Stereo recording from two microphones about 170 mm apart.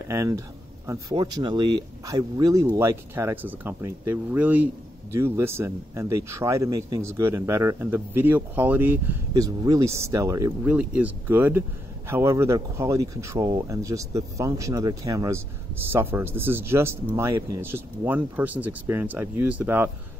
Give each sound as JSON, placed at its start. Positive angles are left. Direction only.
{"t": 0.0, "sound": "speech", "side_deg": -20}
{"t": 10.7, "sound": "speech", "side_deg": -10}